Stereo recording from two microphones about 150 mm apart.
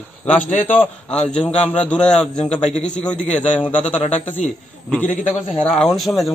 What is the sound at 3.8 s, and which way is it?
Speech, 50° left (ahead or behind).